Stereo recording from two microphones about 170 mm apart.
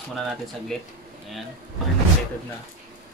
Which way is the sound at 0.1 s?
5° left (ahead or behind).